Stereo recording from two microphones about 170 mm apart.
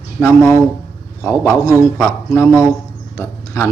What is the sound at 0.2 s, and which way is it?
A man's voice, 15° left (ahead or behind).